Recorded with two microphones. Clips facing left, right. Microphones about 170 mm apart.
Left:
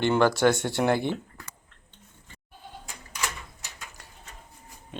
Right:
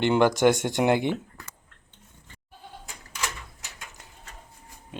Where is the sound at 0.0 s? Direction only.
15° right (ahead or behind).